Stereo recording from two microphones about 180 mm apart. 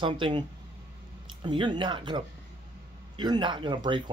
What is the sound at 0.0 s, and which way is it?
Speech, 25° right (ahead or behind).